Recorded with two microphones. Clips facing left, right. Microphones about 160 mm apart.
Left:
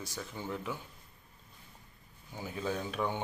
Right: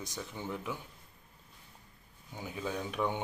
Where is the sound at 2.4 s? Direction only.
15° right (ahead or behind).